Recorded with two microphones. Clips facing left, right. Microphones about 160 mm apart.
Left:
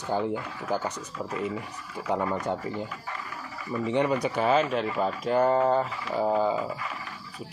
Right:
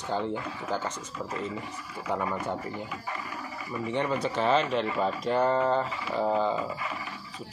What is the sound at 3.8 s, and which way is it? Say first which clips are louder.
Speech: left 3 dB; 15° left (ahead or behind).